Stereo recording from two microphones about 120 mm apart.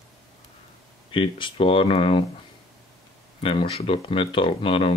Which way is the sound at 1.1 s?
45° left (ahead or behind).